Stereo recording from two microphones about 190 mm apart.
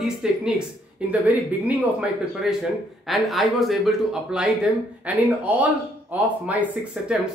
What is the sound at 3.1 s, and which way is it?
Speech, centre (ahead or behind).